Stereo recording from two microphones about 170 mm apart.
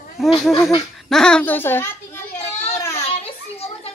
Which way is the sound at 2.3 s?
40° left (ahead or behind).